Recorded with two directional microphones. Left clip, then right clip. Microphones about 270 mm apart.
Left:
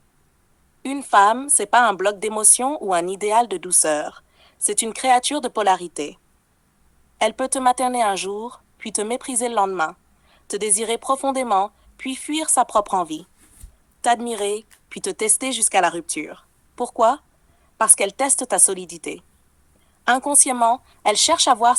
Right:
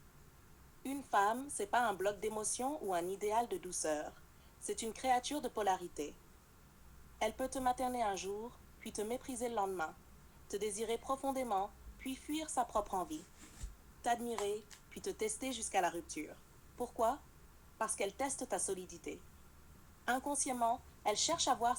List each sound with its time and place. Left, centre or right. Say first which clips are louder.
0.8 s a woman's voice: left 19 dB; left
7.2 s a woman's voice: left 17 dB; left